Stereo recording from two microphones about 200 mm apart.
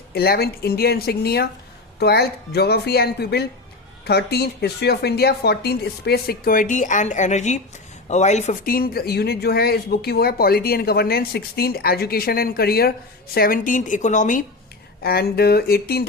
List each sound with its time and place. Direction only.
0.1 s a woman's voice: 50° left (ahead or behind)
15.0 s speech: 50° left (ahead or behind)